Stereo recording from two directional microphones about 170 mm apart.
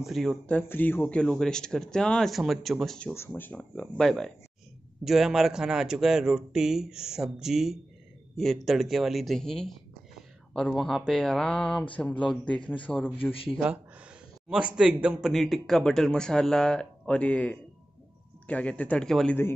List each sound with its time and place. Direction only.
0.0 s speech: centre (ahead or behind)
13.2 s a man's voice: 30° left (ahead or behind)
14.5 s speech: 5° right (ahead or behind)